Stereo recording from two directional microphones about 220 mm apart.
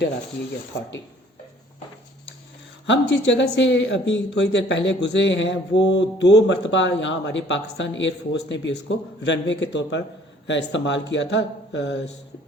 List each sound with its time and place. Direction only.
2.8 s speech: 55° left (ahead or behind)